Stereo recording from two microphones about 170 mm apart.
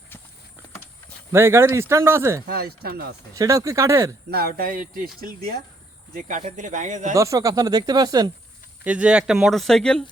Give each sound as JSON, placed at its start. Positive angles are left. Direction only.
{"t": 1.3, "sound": "speech", "side_deg": -15}
{"t": 2.5, "sound": "speech", "side_deg": -65}
{"t": 3.3, "sound": "speech", "side_deg": -20}
{"t": 4.3, "sound": "speech", "side_deg": -65}
{"t": 6.1, "sound": "speech", "side_deg": -50}
{"t": 7.1, "sound": "speech", "side_deg": -20}
{"t": 8.8, "sound": "speech", "side_deg": -10}